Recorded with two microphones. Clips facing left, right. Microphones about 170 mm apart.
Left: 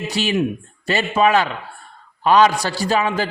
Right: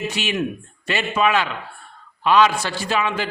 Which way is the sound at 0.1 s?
35° left (ahead or behind).